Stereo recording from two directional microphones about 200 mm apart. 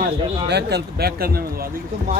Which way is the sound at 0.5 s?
55° right (ahead or behind).